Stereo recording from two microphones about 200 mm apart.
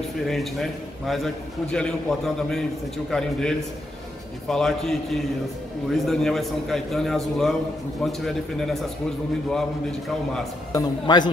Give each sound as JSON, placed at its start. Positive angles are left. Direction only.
{"t": 0.3, "sound": "a man's voice", "side_deg": 0}
{"t": 10.7, "sound": "a man's voice", "side_deg": 20}